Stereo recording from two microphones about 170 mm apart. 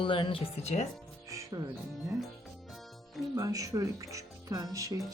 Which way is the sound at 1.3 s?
20° right (ahead or behind).